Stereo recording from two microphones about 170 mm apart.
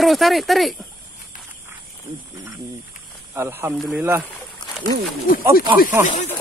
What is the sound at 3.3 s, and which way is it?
Speech, 15° right (ahead or behind).